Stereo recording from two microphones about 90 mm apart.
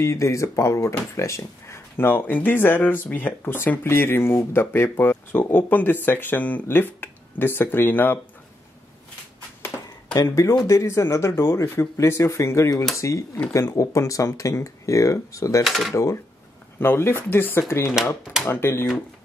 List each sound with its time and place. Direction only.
0.0 s speech: 35° left (ahead or behind)
10.1 s speech: 35° left (ahead or behind)
15.6 s speech: centre (ahead or behind)
15.9 s speech: 35° left (ahead or behind)
16.8 s speech: 25° left (ahead or behind)